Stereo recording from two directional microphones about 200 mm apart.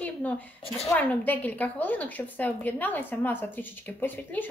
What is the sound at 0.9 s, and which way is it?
A woman's voice, 10° left (ahead or behind).